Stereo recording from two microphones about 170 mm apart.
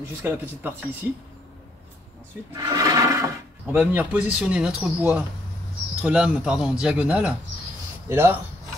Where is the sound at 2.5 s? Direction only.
20° right (ahead or behind).